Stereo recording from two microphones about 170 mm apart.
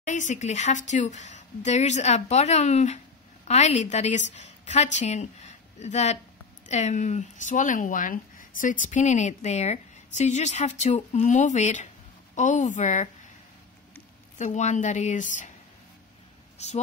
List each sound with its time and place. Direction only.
0.0 s a woman's voice: 45° left (ahead or behind)
14.4 s speech: 45° left (ahead or behind)
16.5 s speech: 40° left (ahead or behind)